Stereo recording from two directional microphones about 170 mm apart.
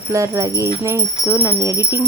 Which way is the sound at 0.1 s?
20° right (ahead or behind).